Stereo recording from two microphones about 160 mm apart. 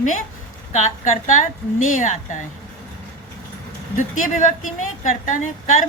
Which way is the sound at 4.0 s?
50° left (ahead or behind).